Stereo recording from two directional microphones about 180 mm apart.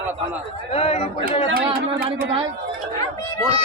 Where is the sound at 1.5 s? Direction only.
55° right (ahead or behind).